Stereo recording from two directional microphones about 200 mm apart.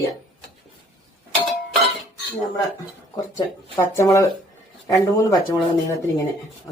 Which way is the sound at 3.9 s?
15° left (ahead or behind).